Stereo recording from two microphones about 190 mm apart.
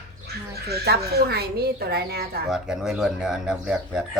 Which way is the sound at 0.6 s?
55° right (ahead or behind).